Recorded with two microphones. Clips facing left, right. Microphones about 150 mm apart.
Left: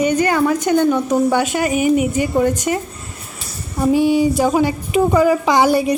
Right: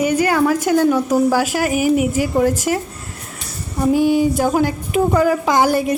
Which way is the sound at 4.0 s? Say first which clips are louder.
Even; 50° right (ahead or behind).